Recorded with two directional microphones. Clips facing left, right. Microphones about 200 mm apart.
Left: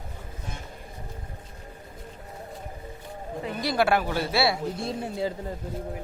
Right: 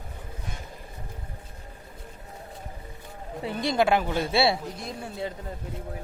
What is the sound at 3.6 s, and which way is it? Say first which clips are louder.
Speech: right 1 dB; 25° right (ahead or behind).